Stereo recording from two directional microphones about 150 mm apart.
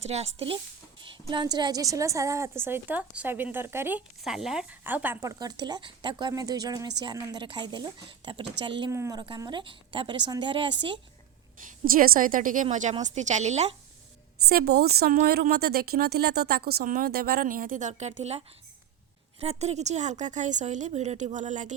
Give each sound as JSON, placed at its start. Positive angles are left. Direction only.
{"t": 0.0, "sound": "a woman's voice", "side_deg": -45}
{"t": 4.2, "sound": "speech", "side_deg": 0}
{"t": 8.9, "sound": "speech", "side_deg": -20}
{"t": 9.4, "sound": "a woman's voice", "side_deg": -30}
{"t": 11.9, "sound": "a woman's voice", "side_deg": -70}
{"t": 14.4, "sound": "a woman's voice", "side_deg": -90}